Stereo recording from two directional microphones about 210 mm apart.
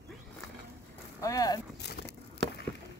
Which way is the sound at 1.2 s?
15° left (ahead or behind).